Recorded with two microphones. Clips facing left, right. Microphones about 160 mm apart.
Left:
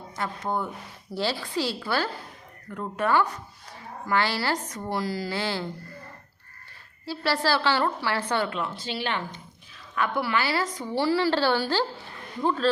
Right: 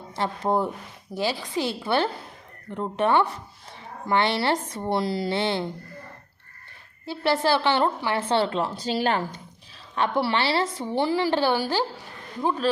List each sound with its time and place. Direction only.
0.2 s speech: 30° right (ahead or behind)
1.1 s a woman's voice: 15° right (ahead or behind)
7.0 s a woman's voice: 20° right (ahead or behind); by 9.2 s 40° right (ahead or behind)
9.9 s a woman's voice: 30° right (ahead or behind); by 12.7 s 15° right (ahead or behind)